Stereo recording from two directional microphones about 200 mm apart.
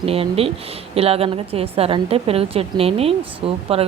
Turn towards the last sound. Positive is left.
turn(degrees=-30)  # may be behind; listen again after turning